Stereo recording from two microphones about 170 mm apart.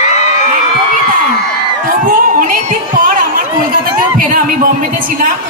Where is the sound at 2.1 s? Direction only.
50° right (ahead or behind).